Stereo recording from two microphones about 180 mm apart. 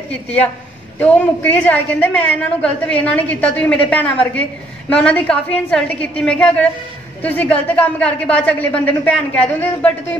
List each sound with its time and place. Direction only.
0.1 s a woman's voice: 10° left (ahead or behind)